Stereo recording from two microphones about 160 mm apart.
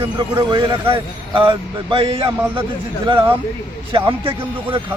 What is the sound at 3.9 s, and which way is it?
Speech, 30° right (ahead or behind).